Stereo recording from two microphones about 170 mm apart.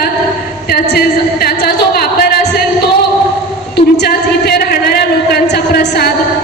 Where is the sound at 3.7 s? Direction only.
75° left (ahead or behind).